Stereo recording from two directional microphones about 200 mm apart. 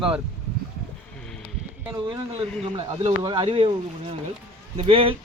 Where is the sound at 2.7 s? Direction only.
30° right (ahead or behind).